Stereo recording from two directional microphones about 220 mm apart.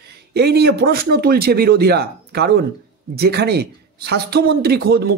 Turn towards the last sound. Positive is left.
turn(degrees=-45)  # may be behind; listen again after turning